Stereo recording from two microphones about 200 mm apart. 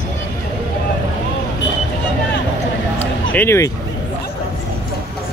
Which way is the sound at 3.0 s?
10° left (ahead or behind).